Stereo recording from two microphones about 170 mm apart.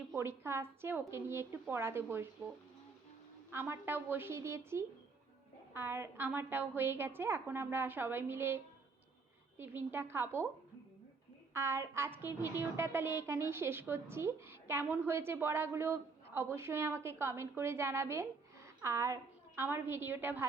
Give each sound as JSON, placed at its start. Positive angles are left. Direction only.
{"t": 0.2, "sound": "a woman's voice", "side_deg": -15}
{"t": 3.5, "sound": "a woman's voice", "side_deg": -15}
{"t": 11.5, "sound": "a woman's voice", "side_deg": -15}